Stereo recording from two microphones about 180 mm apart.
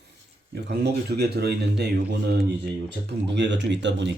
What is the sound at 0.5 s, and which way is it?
Speech, 65° right (ahead or behind).